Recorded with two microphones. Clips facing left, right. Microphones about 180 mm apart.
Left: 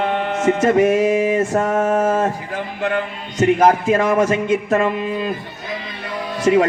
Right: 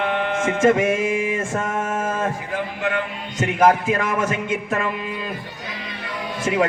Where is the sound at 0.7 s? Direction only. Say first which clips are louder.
Left 5 dB; 40° left (ahead or behind).